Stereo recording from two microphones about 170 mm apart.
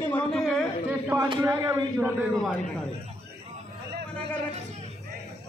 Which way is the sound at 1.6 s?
15° right (ahead or behind).